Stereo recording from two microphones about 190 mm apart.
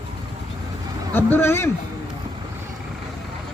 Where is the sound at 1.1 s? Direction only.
10° left (ahead or behind).